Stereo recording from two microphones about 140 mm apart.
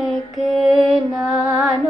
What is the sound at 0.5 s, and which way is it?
Mantra, centre (ahead or behind).